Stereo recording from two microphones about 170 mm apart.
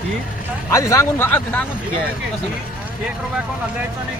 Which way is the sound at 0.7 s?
20° left (ahead or behind).